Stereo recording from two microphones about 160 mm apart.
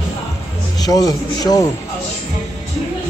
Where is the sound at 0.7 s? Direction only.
25° left (ahead or behind).